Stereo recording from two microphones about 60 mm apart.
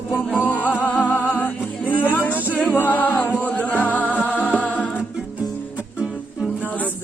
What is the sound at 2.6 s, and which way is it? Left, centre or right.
A capella, left.